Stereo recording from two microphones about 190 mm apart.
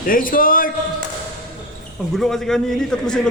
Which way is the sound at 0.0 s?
45° left (ahead or behind).